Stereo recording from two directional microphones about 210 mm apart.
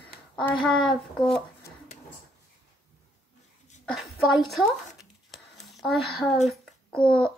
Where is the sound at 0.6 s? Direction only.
Centre (ahead or behind).